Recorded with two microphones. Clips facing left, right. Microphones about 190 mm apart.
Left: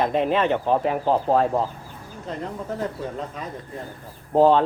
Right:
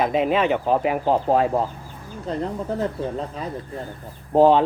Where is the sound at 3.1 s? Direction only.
30° right (ahead or behind).